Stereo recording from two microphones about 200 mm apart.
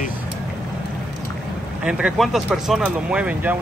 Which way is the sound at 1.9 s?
5° right (ahead or behind).